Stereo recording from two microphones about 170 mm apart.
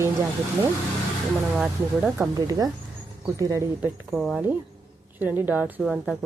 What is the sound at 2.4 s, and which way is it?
Speech, 20° right (ahead or behind).